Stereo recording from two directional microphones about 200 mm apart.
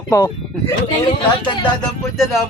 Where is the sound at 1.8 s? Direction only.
Centre (ahead or behind).